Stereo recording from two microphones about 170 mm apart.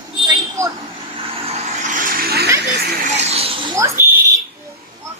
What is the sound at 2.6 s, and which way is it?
Speech, 80° right.